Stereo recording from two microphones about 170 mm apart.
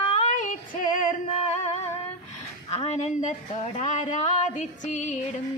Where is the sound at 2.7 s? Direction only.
40° left (ahead or behind).